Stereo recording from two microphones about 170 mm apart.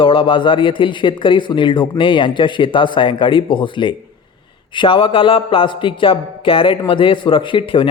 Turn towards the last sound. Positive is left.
turn(degrees=30)  # may be behind; listen again after turning